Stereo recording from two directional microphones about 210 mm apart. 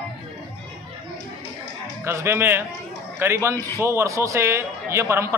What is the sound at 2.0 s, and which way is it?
A man's voice, 10° right (ahead or behind).